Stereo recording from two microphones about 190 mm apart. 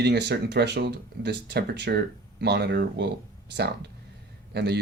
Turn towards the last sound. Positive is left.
turn(degrees=-60)  # may be behind; listen again after turning